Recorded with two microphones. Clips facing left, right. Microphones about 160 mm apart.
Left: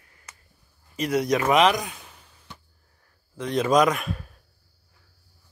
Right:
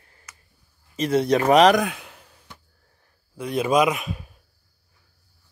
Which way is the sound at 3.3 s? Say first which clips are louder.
Even; 10° right (ahead or behind).